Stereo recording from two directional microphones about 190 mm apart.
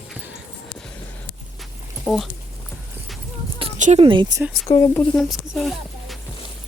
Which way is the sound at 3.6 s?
35° right (ahead or behind).